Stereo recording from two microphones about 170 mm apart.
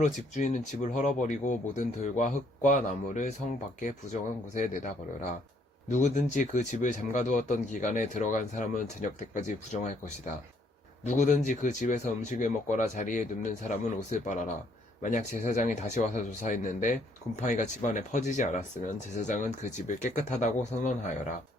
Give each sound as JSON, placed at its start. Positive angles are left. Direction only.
{"t": 0.0, "sound": "speech", "side_deg": 45}
{"t": 11.0, "sound": "speech", "side_deg": 45}